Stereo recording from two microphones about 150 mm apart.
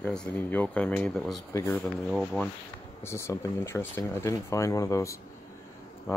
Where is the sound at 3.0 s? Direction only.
20° left (ahead or behind).